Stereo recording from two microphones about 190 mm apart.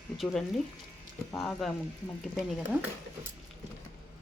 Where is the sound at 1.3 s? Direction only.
5° left (ahead or behind).